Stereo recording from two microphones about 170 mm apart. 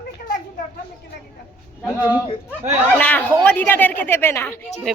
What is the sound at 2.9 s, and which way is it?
Speech, 10° left (ahead or behind).